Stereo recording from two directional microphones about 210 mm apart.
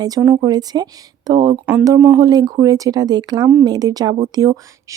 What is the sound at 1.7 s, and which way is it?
Speech, 10° right (ahead or behind).